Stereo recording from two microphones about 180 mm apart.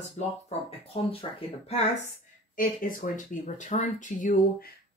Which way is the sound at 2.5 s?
50° left (ahead or behind).